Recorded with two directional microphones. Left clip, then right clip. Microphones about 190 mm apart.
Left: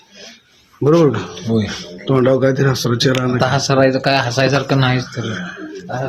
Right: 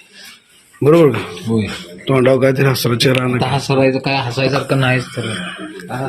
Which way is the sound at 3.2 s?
15° left (ahead or behind).